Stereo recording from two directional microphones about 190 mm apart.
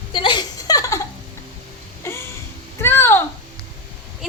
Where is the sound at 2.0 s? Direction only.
15° left (ahead or behind).